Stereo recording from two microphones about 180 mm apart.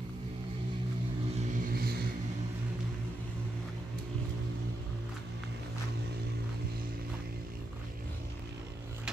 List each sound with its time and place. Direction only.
1.6 s vehicle: 55° right (ahead or behind)